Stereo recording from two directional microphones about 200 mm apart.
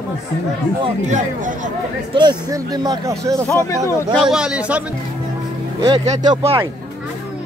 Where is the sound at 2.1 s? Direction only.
20° right (ahead or behind).